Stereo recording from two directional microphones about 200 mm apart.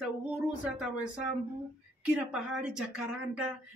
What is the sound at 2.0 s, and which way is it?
Speech, 5° right (ahead or behind).